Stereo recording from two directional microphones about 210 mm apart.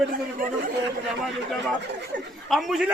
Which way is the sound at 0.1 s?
40° right (ahead or behind).